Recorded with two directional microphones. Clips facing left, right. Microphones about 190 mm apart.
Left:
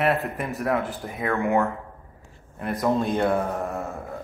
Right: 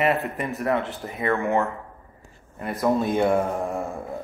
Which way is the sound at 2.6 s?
Centre (ahead or behind).